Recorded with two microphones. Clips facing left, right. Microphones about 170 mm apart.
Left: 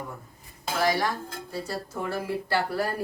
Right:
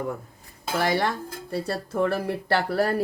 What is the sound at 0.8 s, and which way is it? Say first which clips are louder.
Speech: right 1 dB; 60° right (ahead or behind).